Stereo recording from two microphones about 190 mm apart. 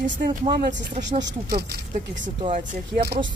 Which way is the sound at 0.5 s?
55° right (ahead or behind).